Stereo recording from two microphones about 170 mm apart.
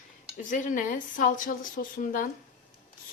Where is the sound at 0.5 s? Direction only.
50° left (ahead or behind).